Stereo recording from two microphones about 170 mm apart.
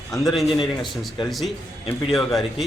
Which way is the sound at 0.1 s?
Centre (ahead or behind).